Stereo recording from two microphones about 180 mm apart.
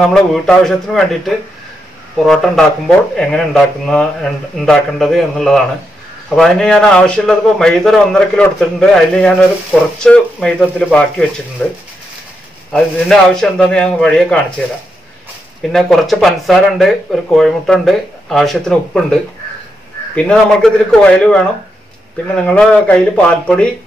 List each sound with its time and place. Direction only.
0.3 s speech: 5° left (ahead or behind)
15.7 s speech: centre (ahead or behind)
20.2 s speech: 5° left (ahead or behind)